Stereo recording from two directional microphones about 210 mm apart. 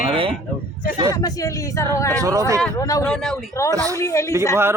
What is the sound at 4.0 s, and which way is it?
Speech, 15° left (ahead or behind).